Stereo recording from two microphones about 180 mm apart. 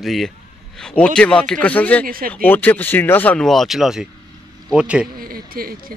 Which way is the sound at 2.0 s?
55° right (ahead or behind).